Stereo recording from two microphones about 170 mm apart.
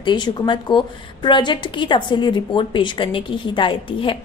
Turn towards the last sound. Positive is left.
turn(degrees=30)  # may be behind; listen again after turning